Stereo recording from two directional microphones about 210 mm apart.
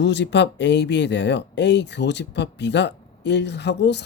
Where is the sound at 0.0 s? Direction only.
55° left (ahead or behind).